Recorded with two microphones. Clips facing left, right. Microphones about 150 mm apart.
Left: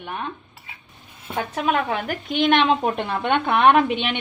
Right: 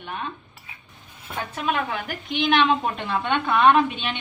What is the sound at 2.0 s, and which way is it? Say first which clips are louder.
A woman's voice: left 4 dB; 45° left (ahead or behind).